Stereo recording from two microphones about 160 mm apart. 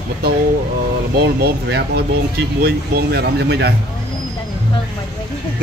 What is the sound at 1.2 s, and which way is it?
Speech, 90° right.